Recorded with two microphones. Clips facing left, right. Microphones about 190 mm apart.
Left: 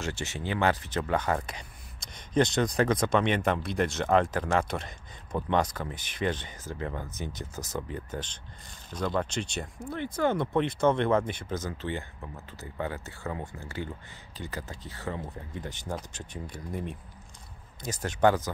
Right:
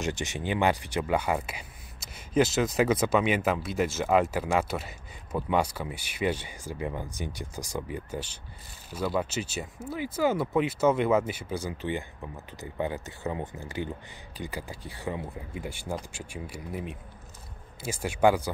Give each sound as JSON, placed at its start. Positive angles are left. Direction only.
{"t": 0.0, "sound": "speech", "side_deg": -15}